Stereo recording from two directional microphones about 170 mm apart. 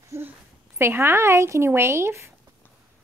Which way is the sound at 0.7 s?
15° right (ahead or behind).